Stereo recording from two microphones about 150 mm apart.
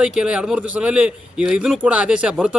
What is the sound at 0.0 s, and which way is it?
A man's voice, 5° right (ahead or behind).